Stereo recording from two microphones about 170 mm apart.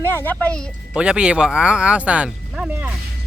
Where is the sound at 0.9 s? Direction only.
5° right (ahead or behind).